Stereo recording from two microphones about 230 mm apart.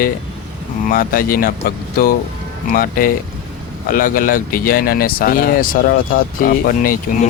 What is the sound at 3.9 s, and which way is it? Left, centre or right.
Speech, left.